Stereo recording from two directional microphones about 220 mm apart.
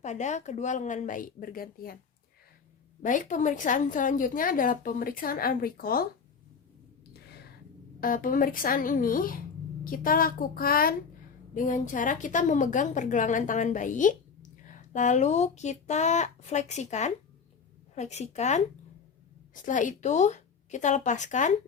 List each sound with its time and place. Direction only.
0.0 s a woman's voice: 35° left (ahead or behind)
3.0 s a woman's voice: 35° left (ahead or behind)
8.0 s a woman's voice: 40° left (ahead or behind)
19.6 s a woman's voice: 35° left (ahead or behind)